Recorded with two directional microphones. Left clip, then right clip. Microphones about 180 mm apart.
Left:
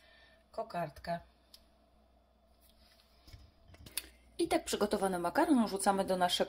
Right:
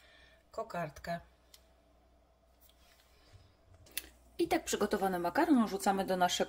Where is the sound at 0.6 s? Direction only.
40° right (ahead or behind).